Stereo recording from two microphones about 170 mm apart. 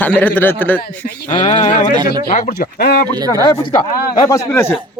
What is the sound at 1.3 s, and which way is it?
Speech, 25° left (ahead or behind).